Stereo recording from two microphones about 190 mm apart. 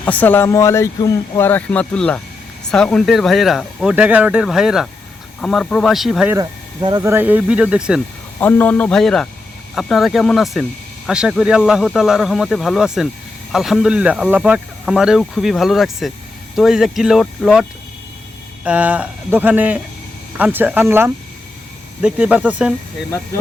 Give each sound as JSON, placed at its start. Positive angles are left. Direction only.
{"t": 0.0, "sound": "speech", "side_deg": 10}
{"t": 6.3, "sound": "speech", "side_deg": -20}
{"t": 8.4, "sound": "speech", "side_deg": 10}